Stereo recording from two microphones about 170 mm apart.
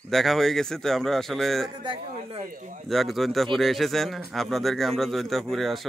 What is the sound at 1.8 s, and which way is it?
Speech, 30° right (ahead or behind).